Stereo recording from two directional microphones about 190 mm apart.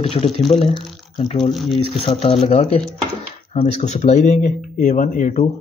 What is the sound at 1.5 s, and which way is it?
Speech, centre (ahead or behind).